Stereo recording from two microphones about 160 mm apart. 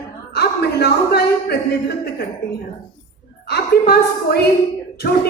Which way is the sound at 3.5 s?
80° left.